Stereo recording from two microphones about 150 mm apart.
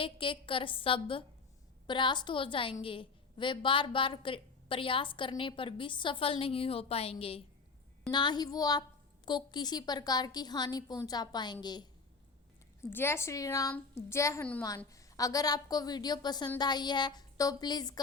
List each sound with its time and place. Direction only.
0.0 s a woman's voice: 35° left (ahead or behind)
8.1 s a woman's voice: 30° left (ahead or behind)
12.8 s a woman's voice: 15° left (ahead or behind)